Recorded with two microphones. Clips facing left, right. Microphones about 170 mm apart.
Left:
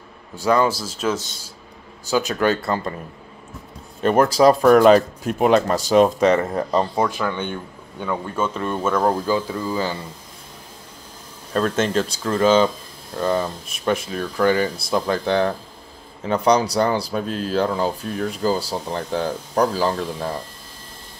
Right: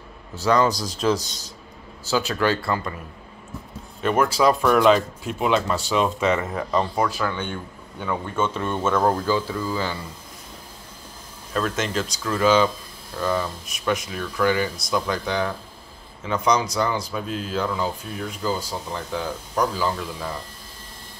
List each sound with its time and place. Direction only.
0.4 s a man's voice: 10° left (ahead or behind)
2.0 s speech: 15° left (ahead or behind)
2.6 s speech: 30° left (ahead or behind)
4.0 s speech: 35° left (ahead or behind)
7.0 s speech: 20° left (ahead or behind)
8.1 s speech: 5° left (ahead or behind); by 9.9 s 20° left (ahead or behind)
11.5 s speech: 35° left (ahead or behind)
16.3 s speech: 35° left (ahead or behind)